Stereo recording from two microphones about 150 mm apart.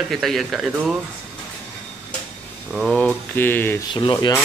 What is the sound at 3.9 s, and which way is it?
Speech, 30° left (ahead or behind).